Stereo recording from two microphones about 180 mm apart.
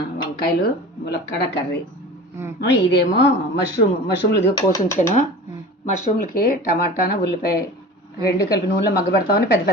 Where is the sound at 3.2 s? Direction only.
75° left (ahead or behind).